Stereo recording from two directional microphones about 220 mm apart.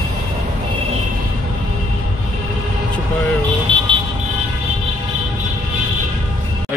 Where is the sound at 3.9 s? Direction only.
25° right (ahead or behind).